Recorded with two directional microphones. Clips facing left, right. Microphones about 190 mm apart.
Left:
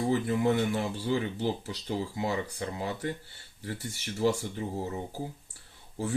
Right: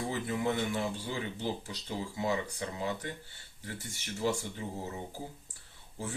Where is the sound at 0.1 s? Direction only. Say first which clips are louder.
Left 7 dB; 35° left (ahead or behind).